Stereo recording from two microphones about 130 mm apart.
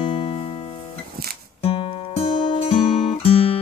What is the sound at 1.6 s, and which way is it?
Music, 50° left (ahead or behind).